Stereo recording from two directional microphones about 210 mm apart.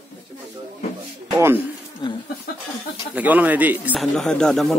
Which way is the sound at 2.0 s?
20° left (ahead or behind).